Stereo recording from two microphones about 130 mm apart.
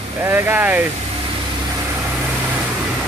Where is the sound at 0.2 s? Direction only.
15° right (ahead or behind).